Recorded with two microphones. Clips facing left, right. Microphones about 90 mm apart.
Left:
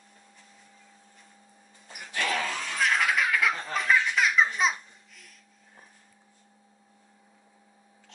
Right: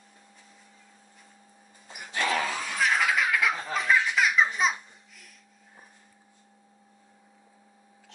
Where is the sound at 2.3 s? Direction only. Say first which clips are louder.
Right 2 dB; 10° right (ahead or behind).